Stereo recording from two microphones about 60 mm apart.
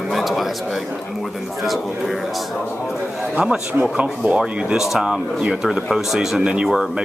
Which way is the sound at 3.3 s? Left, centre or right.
Centre.